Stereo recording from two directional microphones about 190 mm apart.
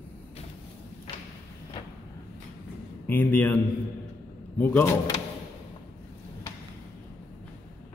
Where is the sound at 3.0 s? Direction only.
10° left (ahead or behind).